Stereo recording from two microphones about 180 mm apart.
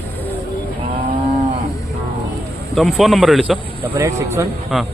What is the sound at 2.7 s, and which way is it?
Speech, centre (ahead or behind).